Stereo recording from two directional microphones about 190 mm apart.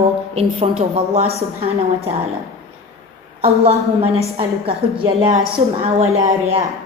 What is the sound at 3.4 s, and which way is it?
A woman's voice, 30° right (ahead or behind).